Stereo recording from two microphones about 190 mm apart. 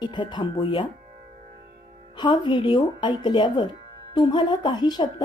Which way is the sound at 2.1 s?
25° left (ahead or behind).